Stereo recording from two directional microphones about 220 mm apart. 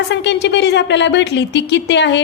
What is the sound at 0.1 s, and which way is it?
A woman's voice, 50° left (ahead or behind).